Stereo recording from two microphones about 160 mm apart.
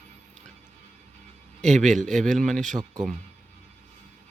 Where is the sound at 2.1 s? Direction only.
5° left (ahead or behind).